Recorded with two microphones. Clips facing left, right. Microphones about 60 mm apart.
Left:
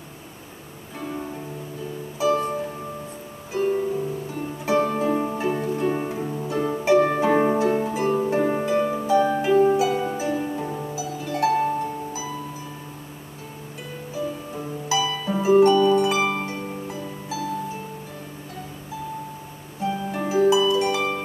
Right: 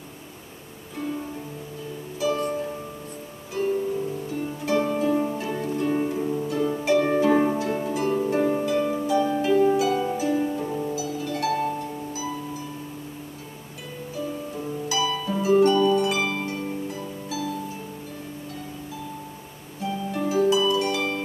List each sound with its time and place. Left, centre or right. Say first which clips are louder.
2.1 s music: left 3 dB; left
3.5 s music: left 2 dB; left
4.6 s harp: left 2 dB; left
5.6 s music: even; centre
6.4 s harp: left 1 dB; left
8.5 s harp: left 1 dB; left; by 11.0 s centre
11.0 s harp: left 3 dB; left
14.5 s music: left 2 dB; left
15.0 s harp: even; centre
15.3 s music: left 3 dB; left
19.8 s harp: left 1 dB; left